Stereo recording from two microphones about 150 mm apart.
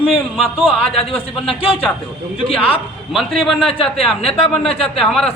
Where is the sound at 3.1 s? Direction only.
Centre (ahead or behind).